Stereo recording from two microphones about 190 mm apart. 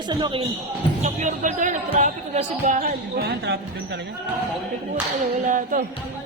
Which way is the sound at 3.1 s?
60° right (ahead or behind).